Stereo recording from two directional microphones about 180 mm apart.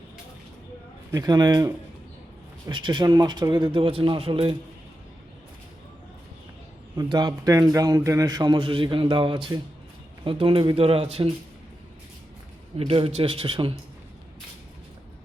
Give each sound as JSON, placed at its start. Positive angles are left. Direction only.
{"t": 1.1, "sound": "a man's voice", "side_deg": -20}
{"t": 6.9, "sound": "a man's voice", "side_deg": -20}
{"t": 12.7, "sound": "a man's voice", "side_deg": -30}